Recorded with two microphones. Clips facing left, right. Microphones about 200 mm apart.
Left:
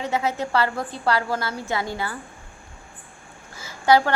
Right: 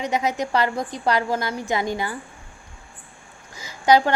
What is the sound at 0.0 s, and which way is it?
A woman's voice, 15° right (ahead or behind).